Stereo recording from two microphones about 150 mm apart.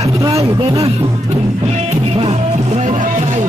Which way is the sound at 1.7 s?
45° right (ahead or behind).